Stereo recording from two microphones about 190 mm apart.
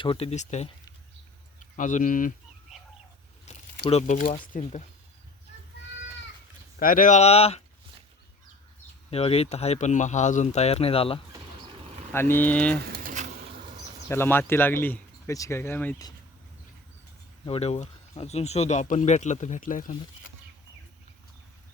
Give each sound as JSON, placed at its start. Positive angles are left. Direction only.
{"t": 0.0, "sound": "speech", "side_deg": 30}
{"t": 3.8, "sound": "speech", "side_deg": 35}
{"t": 6.7, "sound": "speech", "side_deg": 45}
{"t": 9.0, "sound": "speech", "side_deg": 30}
{"t": 12.1, "sound": "speech", "side_deg": 10}
{"t": 12.9, "sound": "a sound", "side_deg": -45}
{"t": 14.1, "sound": "speech", "side_deg": 10}
{"t": 17.4, "sound": "speech", "side_deg": 30}